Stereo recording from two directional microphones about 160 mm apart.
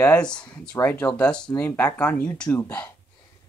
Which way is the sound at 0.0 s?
10° left (ahead or behind).